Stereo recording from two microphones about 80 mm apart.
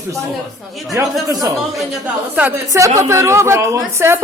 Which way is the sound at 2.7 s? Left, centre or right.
Right.